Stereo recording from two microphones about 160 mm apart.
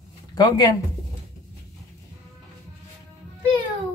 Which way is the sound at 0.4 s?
25° left (ahead or behind).